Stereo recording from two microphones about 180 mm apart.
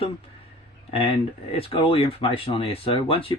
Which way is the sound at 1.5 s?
30° left (ahead or behind).